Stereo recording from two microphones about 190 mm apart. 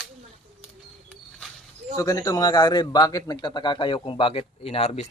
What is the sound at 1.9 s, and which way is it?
A man's voice, 20° left (ahead or behind).